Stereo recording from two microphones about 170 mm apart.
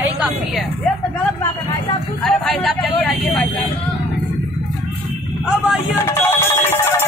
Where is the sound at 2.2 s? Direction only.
Centre (ahead or behind).